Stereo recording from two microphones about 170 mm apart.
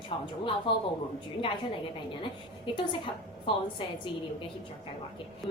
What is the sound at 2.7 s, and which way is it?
Speech, 30° left (ahead or behind).